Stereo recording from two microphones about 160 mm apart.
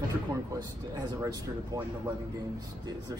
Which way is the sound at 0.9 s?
20° right (ahead or behind).